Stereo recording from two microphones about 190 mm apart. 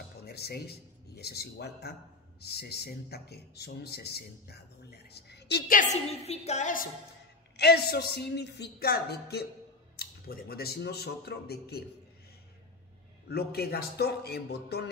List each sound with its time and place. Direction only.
0.2 s a man's voice: 60° left (ahead or behind)
7.5 s speech: 60° left (ahead or behind)
13.3 s speech: 55° left (ahead or behind)